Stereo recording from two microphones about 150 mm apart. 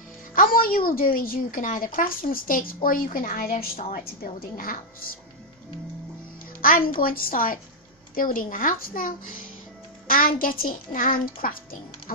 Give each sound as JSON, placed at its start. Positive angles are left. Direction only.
{"t": 0.3, "sound": "a woman's voice", "side_deg": 70}
{"t": 6.6, "sound": "a woman's voice", "side_deg": 70}